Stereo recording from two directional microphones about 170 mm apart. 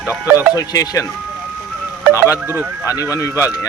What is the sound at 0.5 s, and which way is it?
Speech, 20° left (ahead or behind).